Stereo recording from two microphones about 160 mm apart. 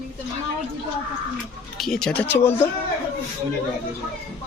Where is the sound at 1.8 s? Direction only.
5° left (ahead or behind).